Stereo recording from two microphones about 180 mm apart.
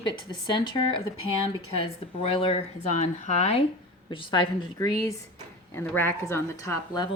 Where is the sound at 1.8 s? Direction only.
30° left (ahead or behind).